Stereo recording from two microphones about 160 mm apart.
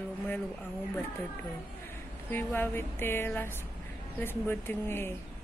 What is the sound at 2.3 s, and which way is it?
A woman's voice, 10° left (ahead or behind).